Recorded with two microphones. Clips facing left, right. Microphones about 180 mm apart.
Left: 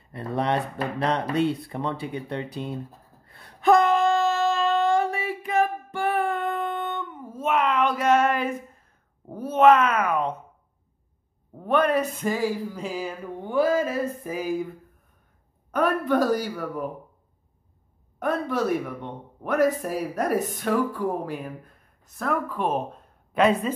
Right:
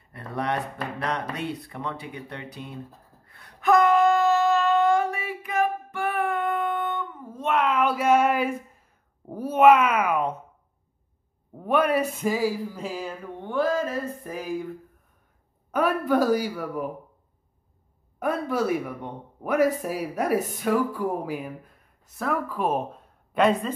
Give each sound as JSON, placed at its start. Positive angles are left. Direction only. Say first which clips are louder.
{"t": 0.1, "sound": "speech", "louder": "left 3 dB", "side_deg": 25}
{"t": 3.3, "sound": "a sound", "louder": "left 3 dB", "side_deg": 30}
{"t": 7.2, "sound": "speech", "louder": "left 1 dB", "side_deg": 5}
{"t": 11.5, "sound": "a sound", "louder": "left 1 dB", "side_deg": -10}
{"t": 15.7, "sound": "speech", "louder": "even", "side_deg": -5}
{"t": 18.2, "sound": "speech", "louder": "even", "side_deg": -10}